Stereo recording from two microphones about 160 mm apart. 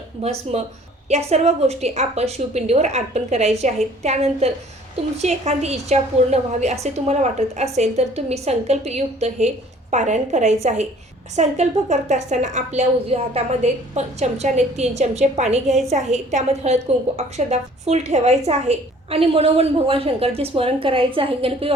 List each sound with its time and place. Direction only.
0.2 s a woman's voice: 40° right (ahead or behind)